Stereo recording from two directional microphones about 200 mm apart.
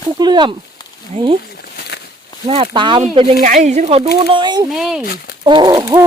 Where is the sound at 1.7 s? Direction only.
55° left (ahead or behind).